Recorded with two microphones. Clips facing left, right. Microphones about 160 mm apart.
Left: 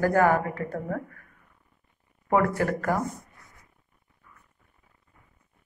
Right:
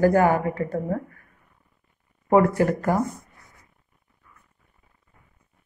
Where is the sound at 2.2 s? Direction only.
25° right (ahead or behind).